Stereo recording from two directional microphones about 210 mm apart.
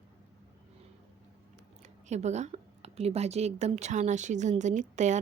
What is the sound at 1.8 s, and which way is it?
A woman's voice, 35° right (ahead or behind).